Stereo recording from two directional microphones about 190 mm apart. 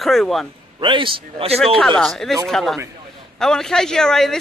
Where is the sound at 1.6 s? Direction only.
5° left (ahead or behind).